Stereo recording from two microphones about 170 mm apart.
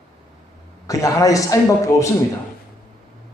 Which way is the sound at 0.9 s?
20° left (ahead or behind).